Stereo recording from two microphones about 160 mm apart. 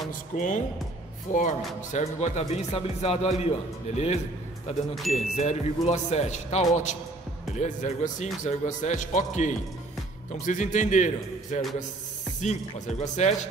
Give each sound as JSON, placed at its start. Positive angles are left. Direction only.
{"t": 0.4, "sound": "speech", "side_deg": 50}
{"t": 13.0, "sound": "speech", "side_deg": 50}